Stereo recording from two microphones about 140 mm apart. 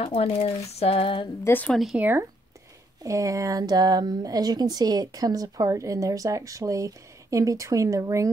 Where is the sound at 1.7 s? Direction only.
Centre (ahead or behind).